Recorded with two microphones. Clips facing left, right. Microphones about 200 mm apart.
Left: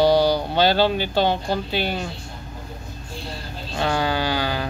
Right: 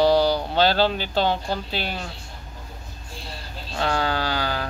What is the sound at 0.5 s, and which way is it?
Speech, centre (ahead or behind).